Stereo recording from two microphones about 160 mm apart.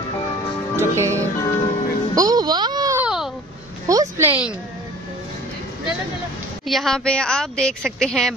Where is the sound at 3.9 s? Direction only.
20° right (ahead or behind).